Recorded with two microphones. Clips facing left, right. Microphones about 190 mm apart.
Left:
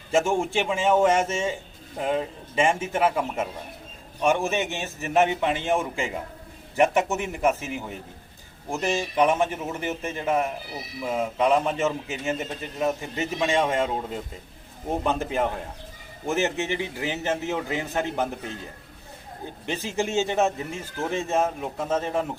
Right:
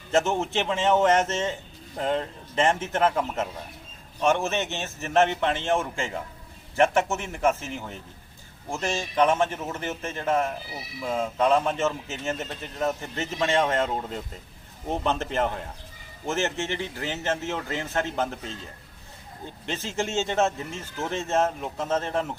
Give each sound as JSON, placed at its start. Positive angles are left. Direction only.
{"t": 0.1, "sound": "a man's voice", "side_deg": 10}
{"t": 19.6, "sound": "a man's voice", "side_deg": 15}